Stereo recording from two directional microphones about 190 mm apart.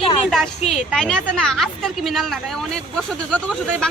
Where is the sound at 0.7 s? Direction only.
Centre (ahead or behind).